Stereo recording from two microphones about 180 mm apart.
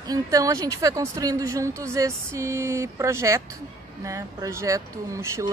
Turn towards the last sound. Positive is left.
turn(degrees=-15)  # may be behind; listen again after turning